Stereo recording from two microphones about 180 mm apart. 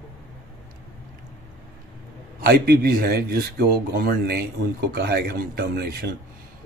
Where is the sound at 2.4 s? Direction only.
55° right (ahead or behind).